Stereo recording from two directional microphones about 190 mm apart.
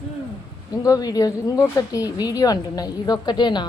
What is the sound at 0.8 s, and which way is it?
A woman's voice, 20° left (ahead or behind).